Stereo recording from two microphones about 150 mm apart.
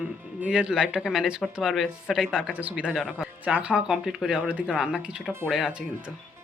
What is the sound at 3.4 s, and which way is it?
Speech, 10° right (ahead or behind).